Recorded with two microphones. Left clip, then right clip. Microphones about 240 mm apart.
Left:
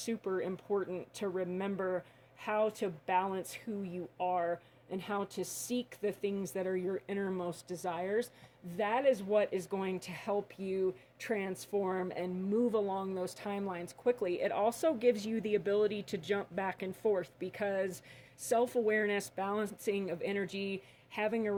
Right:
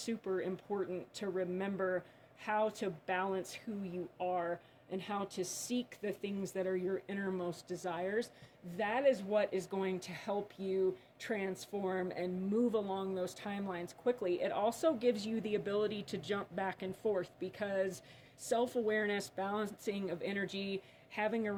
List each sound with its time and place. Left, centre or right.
0.0 s speech: left